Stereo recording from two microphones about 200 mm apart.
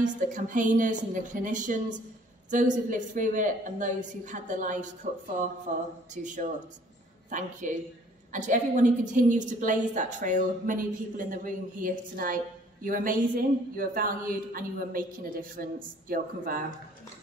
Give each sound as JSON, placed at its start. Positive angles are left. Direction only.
{"t": 0.0, "sound": "a woman's voice", "side_deg": -40}